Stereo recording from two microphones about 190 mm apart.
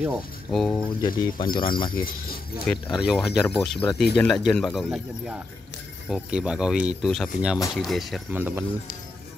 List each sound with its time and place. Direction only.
0.0 s speech: centre (ahead or behind)
1.0 s speech: 25° left (ahead or behind)
2.6 s speech: centre (ahead or behind)